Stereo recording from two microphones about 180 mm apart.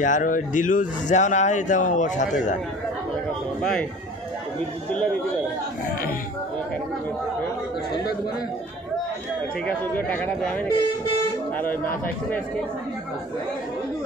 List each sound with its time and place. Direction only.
0.0 s speech: 45° left (ahead or behind)
9.7 s speech: 10° left (ahead or behind)